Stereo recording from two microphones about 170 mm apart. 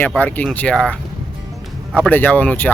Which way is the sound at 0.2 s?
10° left (ahead or behind).